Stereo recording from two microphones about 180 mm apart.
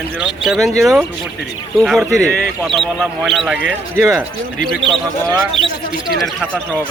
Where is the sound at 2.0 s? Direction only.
20° right (ahead or behind).